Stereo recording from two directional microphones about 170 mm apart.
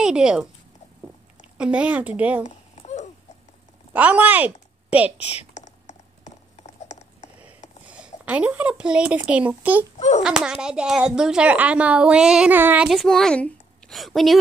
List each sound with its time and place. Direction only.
0.0 s a woman's voice: 5° right (ahead or behind)
2.4 s a sound: 45° left (ahead or behind)
3.9 s speech: 10° right (ahead or behind)
5.5 s a sound: 45° left (ahead or behind)
7.8 s speech: 10° right (ahead or behind)
9.9 s a child's voice: 40° left (ahead or behind)
10.2 s speech: 5° right (ahead or behind)